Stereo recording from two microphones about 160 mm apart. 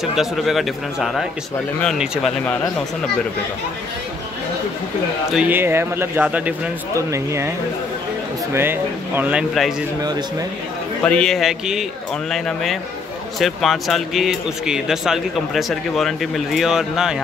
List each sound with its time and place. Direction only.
0.0 s speech: centre (ahead or behind)
5.3 s speech: 10° right (ahead or behind)
8.5 s speech: 15° right (ahead or behind)
11.1 s speech: 5° left (ahead or behind)